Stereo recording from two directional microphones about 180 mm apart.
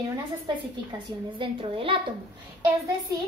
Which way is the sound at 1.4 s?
30° right (ahead or behind).